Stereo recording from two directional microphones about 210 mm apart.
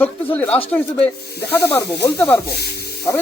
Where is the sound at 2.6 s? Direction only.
50° left (ahead or behind).